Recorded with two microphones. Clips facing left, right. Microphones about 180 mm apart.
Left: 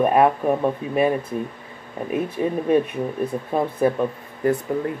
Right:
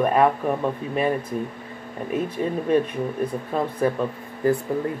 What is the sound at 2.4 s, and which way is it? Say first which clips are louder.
Speech: left 4 dB; 20° left (ahead or behind).